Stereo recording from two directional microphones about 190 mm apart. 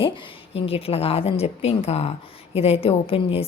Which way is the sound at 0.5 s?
30° left (ahead or behind).